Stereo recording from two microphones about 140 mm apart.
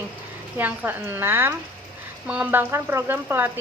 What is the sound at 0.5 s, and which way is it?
A woman's voice, 15° right (ahead or behind).